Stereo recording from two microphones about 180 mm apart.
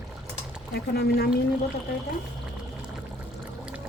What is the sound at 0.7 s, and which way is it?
Speech, 65° left (ahead or behind).